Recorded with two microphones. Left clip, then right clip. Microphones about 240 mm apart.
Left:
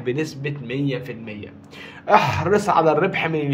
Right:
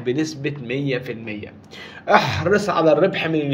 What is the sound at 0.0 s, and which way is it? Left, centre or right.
Speech, centre.